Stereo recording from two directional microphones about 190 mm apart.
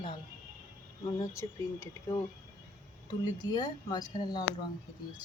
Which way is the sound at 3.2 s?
20° left (ahead or behind).